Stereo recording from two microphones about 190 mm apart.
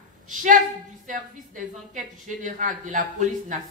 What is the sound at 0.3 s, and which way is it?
A woman's voice, 45° right (ahead or behind).